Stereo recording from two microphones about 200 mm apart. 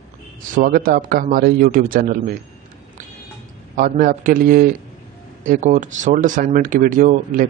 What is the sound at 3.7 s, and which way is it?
A man's voice, 40° right (ahead or behind).